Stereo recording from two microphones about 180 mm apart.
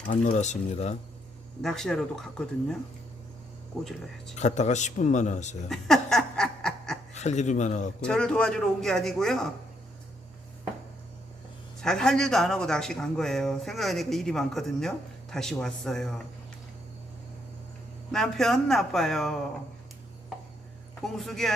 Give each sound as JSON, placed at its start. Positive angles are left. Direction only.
{"t": 0.1, "sound": "speech", "side_deg": 40}
{"t": 1.6, "sound": "speech", "side_deg": 5}
{"t": 3.8, "sound": "speech", "side_deg": 0}
{"t": 4.4, "sound": "speech", "side_deg": 40}
{"t": 5.6, "sound": "snicker", "side_deg": 0}
{"t": 7.1, "sound": "speech", "side_deg": 40}
{"t": 8.0, "sound": "speech", "side_deg": 5}
{"t": 11.8, "sound": "speech", "side_deg": 5}
{"t": 18.1, "sound": "speech", "side_deg": 0}
{"t": 21.0, "sound": "speech", "side_deg": 0}